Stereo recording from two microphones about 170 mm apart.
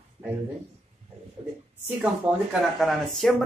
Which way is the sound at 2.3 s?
5° right (ahead or behind).